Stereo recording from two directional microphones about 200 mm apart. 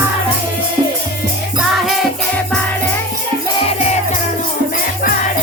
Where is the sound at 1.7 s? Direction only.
Centre (ahead or behind).